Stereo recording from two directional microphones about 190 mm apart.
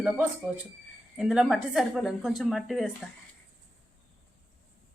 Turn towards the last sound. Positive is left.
turn(degrees=0)  # may be behind; listen again after turning